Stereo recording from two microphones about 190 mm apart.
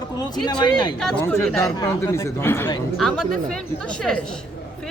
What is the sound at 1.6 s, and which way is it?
Speech, 15° left (ahead or behind).